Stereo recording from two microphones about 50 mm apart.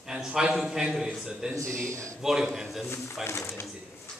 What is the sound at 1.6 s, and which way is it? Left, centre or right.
Speech, right.